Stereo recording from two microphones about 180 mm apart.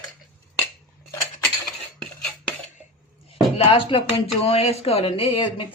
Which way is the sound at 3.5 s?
30° left (ahead or behind).